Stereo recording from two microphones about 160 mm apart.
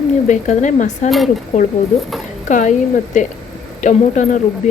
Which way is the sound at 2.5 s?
50° left (ahead or behind).